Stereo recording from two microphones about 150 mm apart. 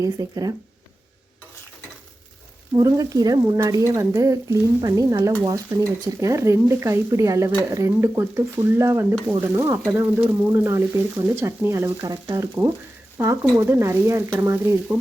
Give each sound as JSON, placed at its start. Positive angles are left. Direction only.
{"t": 0.0, "sound": "speech", "side_deg": -25}
{"t": 2.7, "sound": "speech", "side_deg": -25}